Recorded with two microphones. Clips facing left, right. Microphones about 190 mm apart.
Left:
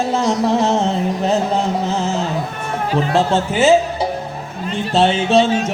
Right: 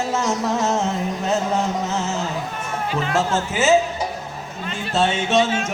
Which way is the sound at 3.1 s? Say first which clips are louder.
Left 4 dB; 35° left (ahead or behind).